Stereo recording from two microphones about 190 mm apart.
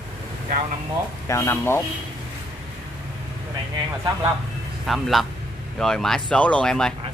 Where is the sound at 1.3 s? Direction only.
15° left (ahead or behind).